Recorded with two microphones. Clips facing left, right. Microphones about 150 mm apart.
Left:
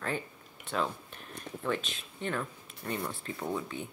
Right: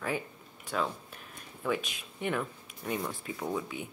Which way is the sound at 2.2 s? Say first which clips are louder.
Right 2 dB; 10° right (ahead or behind).